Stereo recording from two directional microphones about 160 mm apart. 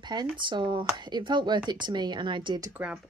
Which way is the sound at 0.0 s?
25° right (ahead or behind).